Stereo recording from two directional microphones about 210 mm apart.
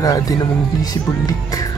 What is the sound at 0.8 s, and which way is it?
Music, 20° left (ahead or behind).